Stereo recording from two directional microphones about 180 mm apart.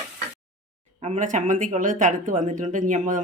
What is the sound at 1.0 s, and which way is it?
Speech, 40° right (ahead or behind).